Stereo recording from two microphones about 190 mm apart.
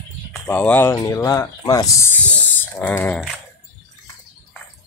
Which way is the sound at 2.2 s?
5° left (ahead or behind).